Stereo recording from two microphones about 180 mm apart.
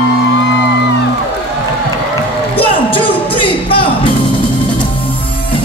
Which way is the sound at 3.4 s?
30° left (ahead or behind).